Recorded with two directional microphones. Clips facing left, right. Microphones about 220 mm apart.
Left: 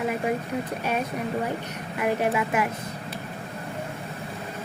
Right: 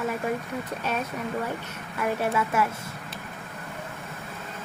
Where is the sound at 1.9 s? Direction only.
15° left (ahead or behind).